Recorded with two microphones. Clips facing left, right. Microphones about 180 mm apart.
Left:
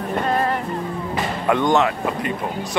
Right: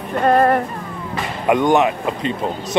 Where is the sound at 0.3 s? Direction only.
55° right (ahead or behind).